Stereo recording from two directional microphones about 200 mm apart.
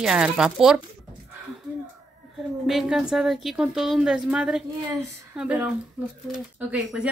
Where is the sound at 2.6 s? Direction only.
Centre (ahead or behind).